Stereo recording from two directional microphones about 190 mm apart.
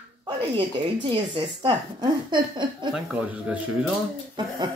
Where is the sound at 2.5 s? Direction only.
25° right (ahead or behind).